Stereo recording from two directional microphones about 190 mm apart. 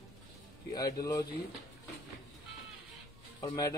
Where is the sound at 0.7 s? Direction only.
20° left (ahead or behind).